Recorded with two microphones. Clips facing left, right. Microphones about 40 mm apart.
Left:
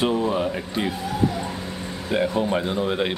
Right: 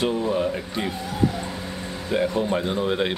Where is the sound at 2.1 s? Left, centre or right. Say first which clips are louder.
Left 1 dB; centre.